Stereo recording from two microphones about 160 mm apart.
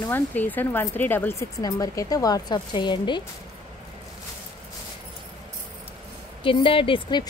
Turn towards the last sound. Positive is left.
turn(degrees=30)  # may be behind; listen again after turning